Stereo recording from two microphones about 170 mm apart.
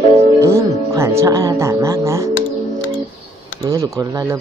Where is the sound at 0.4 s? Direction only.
15° right (ahead or behind).